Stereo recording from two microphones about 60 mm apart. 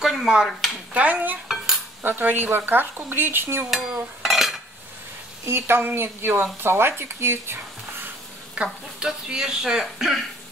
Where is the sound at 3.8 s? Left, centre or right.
Centre.